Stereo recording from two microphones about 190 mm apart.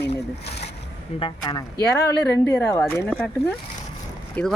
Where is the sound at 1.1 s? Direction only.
25° left (ahead or behind).